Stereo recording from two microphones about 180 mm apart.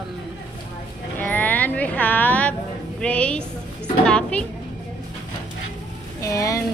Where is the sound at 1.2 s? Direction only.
10° left (ahead or behind).